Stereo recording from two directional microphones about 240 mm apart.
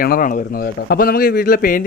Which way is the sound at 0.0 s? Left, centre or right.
Left.